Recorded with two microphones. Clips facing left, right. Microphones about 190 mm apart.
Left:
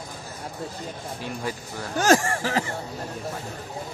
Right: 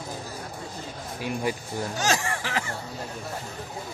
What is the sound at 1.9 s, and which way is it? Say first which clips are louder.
Speech: left 9 dB; 50° left (ahead or behind).